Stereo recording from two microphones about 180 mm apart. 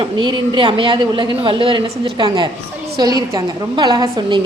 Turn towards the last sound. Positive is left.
turn(degrees=-25)  # may be behind; listen again after turning